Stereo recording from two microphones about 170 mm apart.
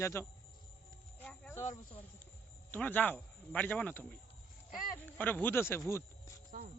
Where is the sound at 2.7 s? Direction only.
10° left (ahead or behind).